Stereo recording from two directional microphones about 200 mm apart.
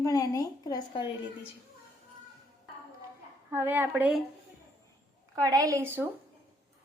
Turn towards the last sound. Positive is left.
turn(degrees=-10)  # may be behind; listen again after turning